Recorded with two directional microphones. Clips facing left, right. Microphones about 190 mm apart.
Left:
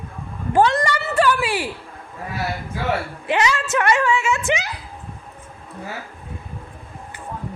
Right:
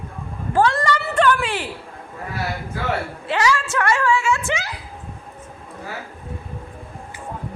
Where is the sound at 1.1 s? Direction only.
5° left (ahead or behind).